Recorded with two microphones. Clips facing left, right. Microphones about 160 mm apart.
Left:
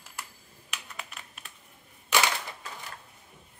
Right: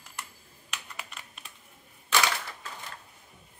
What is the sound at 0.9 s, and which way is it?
Computer keyboard, centre (ahead or behind).